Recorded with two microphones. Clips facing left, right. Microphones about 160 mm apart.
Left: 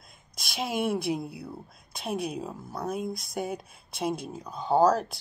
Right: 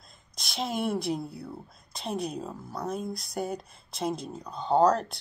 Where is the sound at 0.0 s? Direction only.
Centre (ahead or behind).